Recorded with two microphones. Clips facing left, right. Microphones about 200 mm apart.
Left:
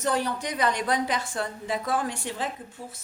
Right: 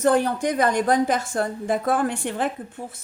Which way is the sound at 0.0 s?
50° right (ahead or behind).